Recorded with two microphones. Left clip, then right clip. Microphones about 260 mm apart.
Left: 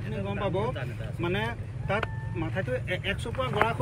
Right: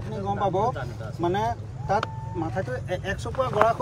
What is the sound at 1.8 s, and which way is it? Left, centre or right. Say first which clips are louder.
Vehicle: right 5 dB; right.